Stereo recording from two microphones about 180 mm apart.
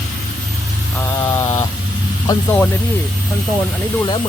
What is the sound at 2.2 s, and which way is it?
Speech, 20° left (ahead or behind).